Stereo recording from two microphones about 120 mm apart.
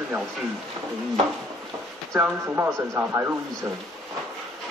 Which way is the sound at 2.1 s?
10° right (ahead or behind).